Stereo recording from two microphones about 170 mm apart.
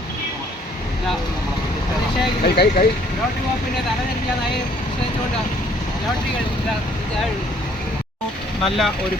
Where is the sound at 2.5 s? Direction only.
70° left (ahead or behind).